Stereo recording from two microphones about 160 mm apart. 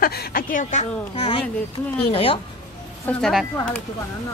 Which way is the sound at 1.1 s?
35° left (ahead or behind).